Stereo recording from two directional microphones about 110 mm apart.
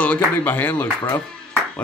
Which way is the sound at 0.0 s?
15° left (ahead or behind).